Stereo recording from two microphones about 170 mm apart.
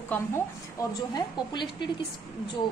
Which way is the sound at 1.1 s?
25° left (ahead or behind).